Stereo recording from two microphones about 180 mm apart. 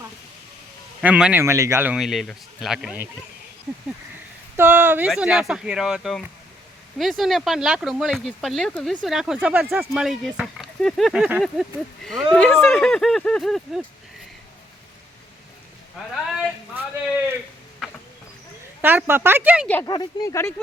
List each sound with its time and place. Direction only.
1.0 s a man's voice: 5° right (ahead or behind)
4.5 s speech: 10° right (ahead or behind)
16.2 s speech: 5° right (ahead or behind)
18.8 s a man's voice: 10° right (ahead or behind)
19.8 s speech: 20° left (ahead or behind)